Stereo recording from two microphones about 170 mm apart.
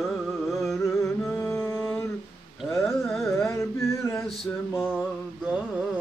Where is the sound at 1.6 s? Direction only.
10° left (ahead or behind).